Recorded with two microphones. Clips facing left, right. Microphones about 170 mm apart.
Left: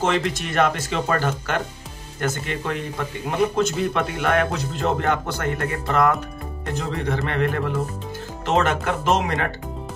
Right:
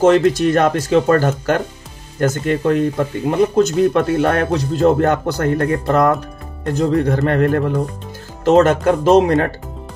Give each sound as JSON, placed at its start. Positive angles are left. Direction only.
{"t": 0.0, "sound": "speech", "side_deg": -40}